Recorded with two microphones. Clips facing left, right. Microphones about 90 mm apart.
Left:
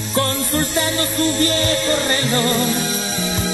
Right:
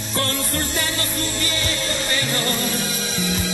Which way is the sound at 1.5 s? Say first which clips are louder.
Left 7 dB; 40° left (ahead or behind).